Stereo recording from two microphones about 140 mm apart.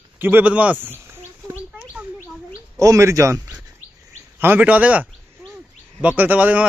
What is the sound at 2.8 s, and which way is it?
Speech, 20° right (ahead or behind).